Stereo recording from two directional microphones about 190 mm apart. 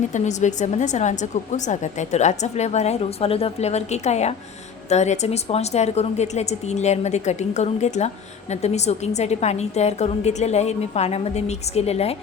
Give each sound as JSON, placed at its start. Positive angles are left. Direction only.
{"t": 0.1, "sound": "a woman's voice", "side_deg": 40}